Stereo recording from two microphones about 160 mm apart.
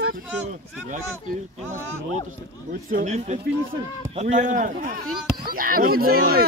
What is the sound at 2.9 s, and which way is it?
A man's voice, 50° right (ahead or behind).